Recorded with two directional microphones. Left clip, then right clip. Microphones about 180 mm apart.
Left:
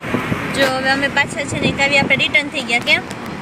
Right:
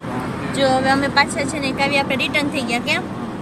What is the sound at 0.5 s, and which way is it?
A woman's voice, 5° left (ahead or behind).